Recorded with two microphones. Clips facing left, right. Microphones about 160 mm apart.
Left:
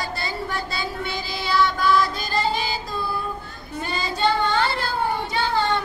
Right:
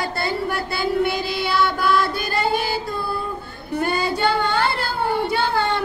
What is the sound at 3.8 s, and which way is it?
Child singing, 60° right (ahead or behind).